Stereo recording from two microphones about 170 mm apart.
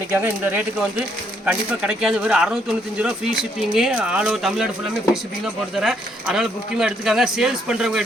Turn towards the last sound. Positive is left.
turn(degrees=-5)  # may be behind; listen again after turning